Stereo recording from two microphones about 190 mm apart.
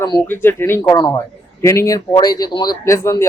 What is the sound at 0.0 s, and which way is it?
Speech, 15° left (ahead or behind).